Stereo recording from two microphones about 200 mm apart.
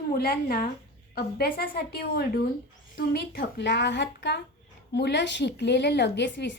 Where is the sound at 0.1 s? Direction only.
45° left (ahead or behind).